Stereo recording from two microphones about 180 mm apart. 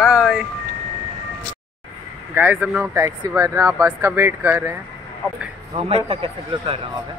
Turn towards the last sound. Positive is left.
turn(degrees=-30)  # may be behind; listen again after turning